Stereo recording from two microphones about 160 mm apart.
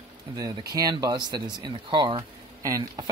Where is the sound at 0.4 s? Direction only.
25° right (ahead or behind).